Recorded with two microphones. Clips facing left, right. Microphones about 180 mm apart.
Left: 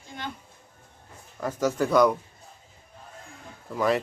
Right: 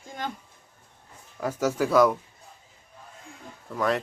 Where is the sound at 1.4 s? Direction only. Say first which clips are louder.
Even; 10° right (ahead or behind).